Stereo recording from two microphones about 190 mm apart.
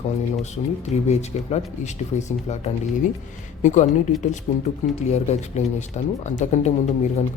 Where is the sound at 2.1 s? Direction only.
40° left (ahead or behind).